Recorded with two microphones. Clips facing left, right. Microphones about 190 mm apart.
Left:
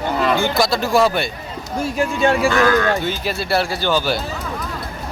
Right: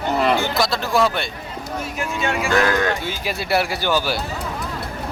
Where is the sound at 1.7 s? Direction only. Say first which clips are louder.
Left 7 dB; 30° left (ahead or behind).